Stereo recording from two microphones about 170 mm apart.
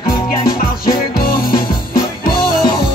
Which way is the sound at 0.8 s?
60° left (ahead or behind).